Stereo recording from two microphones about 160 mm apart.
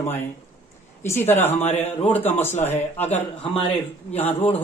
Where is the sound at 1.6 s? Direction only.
45° left (ahead or behind).